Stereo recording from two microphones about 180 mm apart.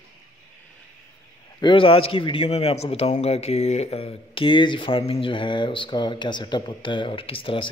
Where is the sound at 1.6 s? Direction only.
30° left (ahead or behind).